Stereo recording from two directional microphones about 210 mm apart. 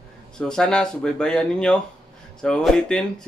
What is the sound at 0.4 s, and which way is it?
Speech, 5° left (ahead or behind).